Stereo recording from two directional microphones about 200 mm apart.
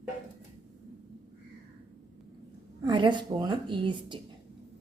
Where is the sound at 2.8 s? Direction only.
25° right (ahead or behind).